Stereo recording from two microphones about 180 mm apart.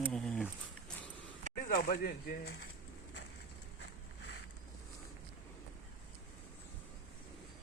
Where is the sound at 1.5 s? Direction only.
50° left (ahead or behind).